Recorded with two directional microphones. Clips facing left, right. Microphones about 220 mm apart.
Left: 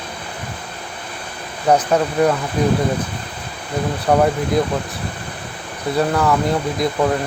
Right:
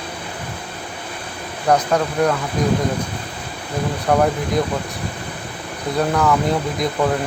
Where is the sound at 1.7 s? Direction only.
10° left (ahead or behind).